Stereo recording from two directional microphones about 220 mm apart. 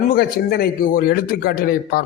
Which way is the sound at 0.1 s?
45° left (ahead or behind).